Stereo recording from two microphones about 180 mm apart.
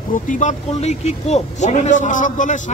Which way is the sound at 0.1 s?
45° left (ahead or behind).